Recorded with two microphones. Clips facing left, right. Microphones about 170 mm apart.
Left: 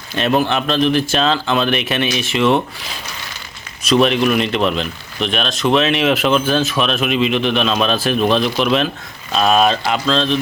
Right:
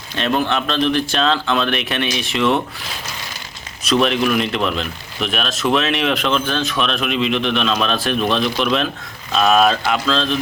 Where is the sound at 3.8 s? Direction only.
Centre (ahead or behind).